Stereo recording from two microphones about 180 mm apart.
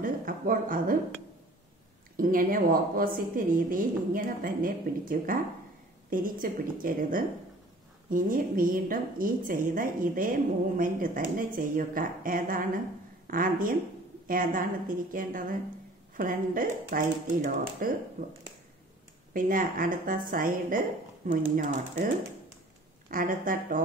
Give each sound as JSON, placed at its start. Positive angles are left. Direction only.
{"t": 0.0, "sound": "a sound", "side_deg": -50}
{"t": 2.1, "sound": "a woman's voice", "side_deg": -50}
{"t": 23.0, "sound": "a woman's voice", "side_deg": -50}